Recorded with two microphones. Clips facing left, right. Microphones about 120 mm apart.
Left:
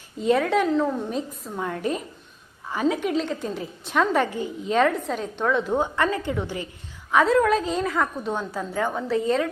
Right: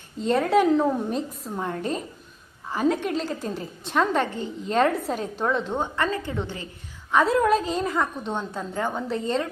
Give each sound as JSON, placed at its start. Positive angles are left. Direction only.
{"t": 0.2, "sound": "a woman's voice", "side_deg": 0}
{"t": 0.6, "sound": "speech", "side_deg": -15}
{"t": 1.1, "sound": "a woman's voice", "side_deg": 0}
{"t": 5.5, "sound": "a woman's voice", "side_deg": 5}
{"t": 7.1, "sound": "a woman's voice", "side_deg": 0}